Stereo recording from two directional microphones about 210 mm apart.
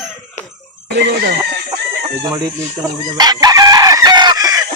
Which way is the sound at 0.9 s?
55° right (ahead or behind).